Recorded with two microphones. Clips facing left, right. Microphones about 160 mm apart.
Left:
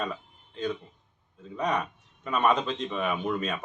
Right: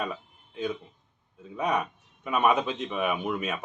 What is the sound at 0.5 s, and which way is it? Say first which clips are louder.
A man's voice: even; 10° right (ahead or behind).